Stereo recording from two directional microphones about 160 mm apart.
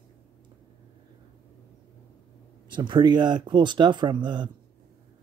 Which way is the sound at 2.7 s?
30° right (ahead or behind).